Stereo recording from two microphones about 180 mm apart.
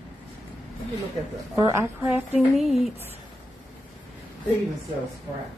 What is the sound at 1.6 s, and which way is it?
Speech, 15° right (ahead or behind).